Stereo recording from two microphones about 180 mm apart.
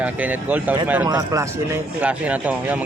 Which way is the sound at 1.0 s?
20° right (ahead or behind).